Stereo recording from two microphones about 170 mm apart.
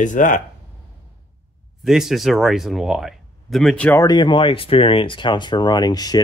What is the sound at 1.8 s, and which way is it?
Speech, centre (ahead or behind).